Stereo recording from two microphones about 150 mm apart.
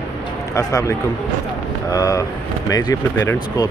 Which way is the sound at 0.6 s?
25° left (ahead or behind).